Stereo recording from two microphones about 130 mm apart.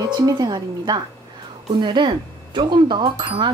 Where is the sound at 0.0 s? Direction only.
30° right (ahead or behind).